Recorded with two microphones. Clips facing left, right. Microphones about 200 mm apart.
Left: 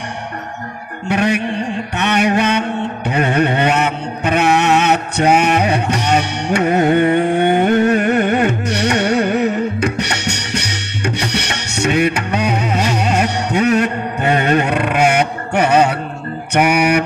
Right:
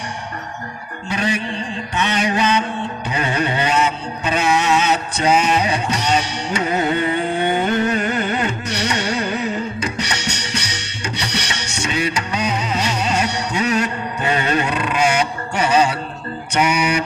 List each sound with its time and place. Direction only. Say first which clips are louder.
1.0 s mantra: left 6 dB; 60° left (ahead or behind)
3.1 s a sound: left 6 dB; 60° left (ahead or behind)
11.1 s music: left 4 dB; 55° left (ahead or behind)
16.5 s mantra: left 5 dB; 60° left (ahead or behind)